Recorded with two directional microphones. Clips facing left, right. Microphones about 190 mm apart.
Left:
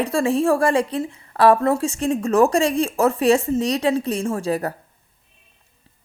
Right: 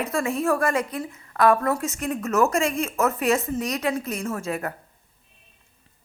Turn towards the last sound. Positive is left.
turn(degrees=35)  # may be behind; listen again after turning